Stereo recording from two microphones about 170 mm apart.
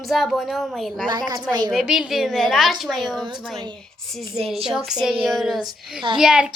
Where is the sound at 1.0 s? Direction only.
25° right (ahead or behind).